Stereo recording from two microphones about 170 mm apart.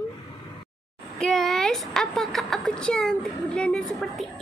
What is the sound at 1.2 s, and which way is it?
Speech, centre (ahead or behind).